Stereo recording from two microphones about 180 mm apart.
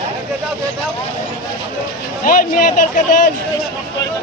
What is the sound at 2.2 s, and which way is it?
Speech, 50° left (ahead or behind).